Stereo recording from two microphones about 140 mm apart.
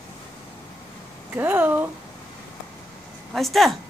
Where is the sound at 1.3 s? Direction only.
15° right (ahead or behind).